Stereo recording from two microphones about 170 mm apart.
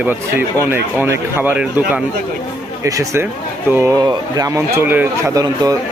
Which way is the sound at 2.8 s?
15° right (ahead or behind).